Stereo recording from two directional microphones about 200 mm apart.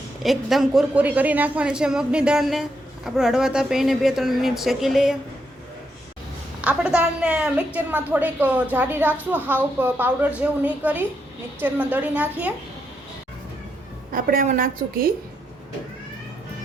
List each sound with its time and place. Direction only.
0.2 s a woman's voice: centre (ahead or behind)
6.6 s a woman's voice: 5° right (ahead or behind)
14.1 s a woman's voice: 45° right (ahead or behind)